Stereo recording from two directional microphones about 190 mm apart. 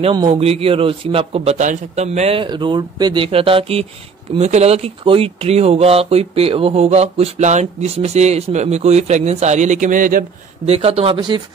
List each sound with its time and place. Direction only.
0.0 s a man's voice: 25° right (ahead or behind); by 10.7 s 45° right (ahead or behind)
10.7 s a man's voice: 30° right (ahead or behind)